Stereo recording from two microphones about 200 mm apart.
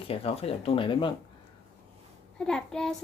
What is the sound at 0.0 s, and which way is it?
Speech, 30° left (ahead or behind).